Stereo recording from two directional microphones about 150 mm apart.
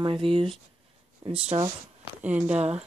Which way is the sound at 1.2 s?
25° right (ahead or behind).